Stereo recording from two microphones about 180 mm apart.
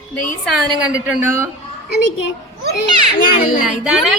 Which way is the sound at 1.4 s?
65° left (ahead or behind).